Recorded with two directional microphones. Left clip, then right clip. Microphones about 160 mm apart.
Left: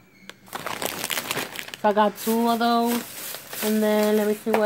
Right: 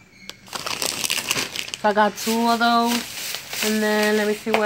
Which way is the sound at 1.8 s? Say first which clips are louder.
Right 1 dB; 25° left (ahead or behind).